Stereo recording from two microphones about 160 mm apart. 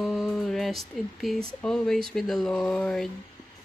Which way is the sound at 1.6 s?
5° left (ahead or behind).